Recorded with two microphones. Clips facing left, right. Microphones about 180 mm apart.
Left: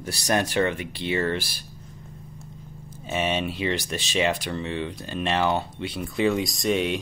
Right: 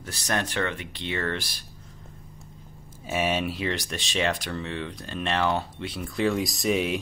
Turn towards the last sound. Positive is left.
turn(degrees=0)  # may be behind; listen again after turning